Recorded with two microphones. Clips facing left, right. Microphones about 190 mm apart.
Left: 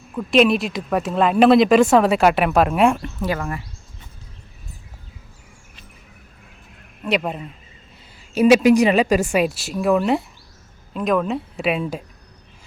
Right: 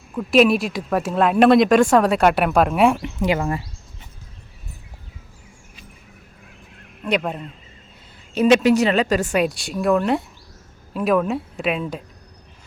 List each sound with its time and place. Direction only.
0.1 s speech: centre (ahead or behind)
3.0 s speech: 15° right (ahead or behind)
7.0 s a woman's voice: 5° left (ahead or behind)